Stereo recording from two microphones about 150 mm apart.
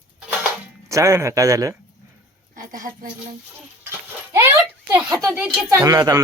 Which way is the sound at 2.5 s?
65° right (ahead or behind).